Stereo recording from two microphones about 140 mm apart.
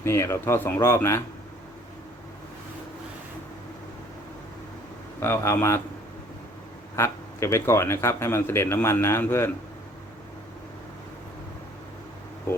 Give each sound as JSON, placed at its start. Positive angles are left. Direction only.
{"t": 0.0, "sound": "a man's voice", "side_deg": 20}
{"t": 5.2, "sound": "a man's voice", "side_deg": 20}
{"t": 6.9, "sound": "a man's voice", "side_deg": 20}